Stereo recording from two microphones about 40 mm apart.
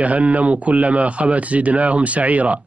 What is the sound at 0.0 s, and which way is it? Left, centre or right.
A man's voice, right.